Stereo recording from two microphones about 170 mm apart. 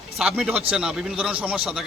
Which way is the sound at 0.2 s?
Centre (ahead or behind).